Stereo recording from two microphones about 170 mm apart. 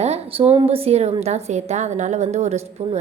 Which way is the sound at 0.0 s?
35° right (ahead or behind).